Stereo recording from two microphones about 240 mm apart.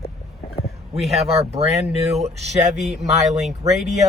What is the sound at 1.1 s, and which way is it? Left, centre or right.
Speech, right.